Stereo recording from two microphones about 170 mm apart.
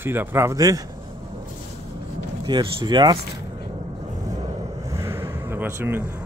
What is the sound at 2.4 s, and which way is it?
Speech, 25° right (ahead or behind).